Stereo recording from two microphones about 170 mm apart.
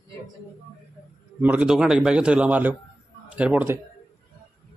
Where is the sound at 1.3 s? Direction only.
10° right (ahead or behind).